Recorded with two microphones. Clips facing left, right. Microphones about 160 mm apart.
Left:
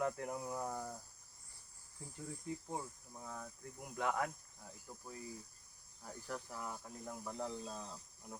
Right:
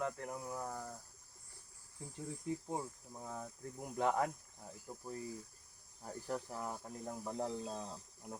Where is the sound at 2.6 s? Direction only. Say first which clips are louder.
Right 3 dB; 20° right (ahead or behind).